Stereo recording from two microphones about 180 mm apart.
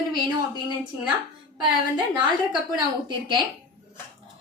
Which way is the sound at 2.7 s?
25° right (ahead or behind).